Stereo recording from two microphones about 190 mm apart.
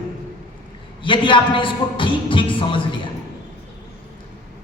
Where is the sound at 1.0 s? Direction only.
25° left (ahead or behind).